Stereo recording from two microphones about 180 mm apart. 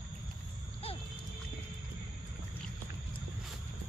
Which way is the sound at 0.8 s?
35° left (ahead or behind).